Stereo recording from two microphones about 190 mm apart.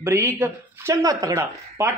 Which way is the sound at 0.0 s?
15° right (ahead or behind).